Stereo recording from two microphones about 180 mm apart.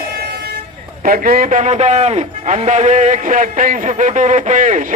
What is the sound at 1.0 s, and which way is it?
A man's voice, 55° right (ahead or behind).